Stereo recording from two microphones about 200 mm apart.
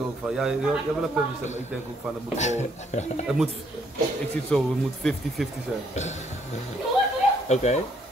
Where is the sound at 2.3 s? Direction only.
35° left (ahead or behind).